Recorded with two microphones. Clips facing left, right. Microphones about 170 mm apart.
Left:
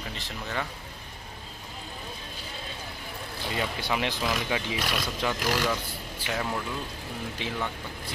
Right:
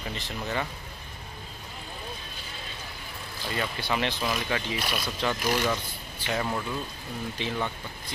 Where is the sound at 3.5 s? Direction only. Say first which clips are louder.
Even; 10° left (ahead or behind).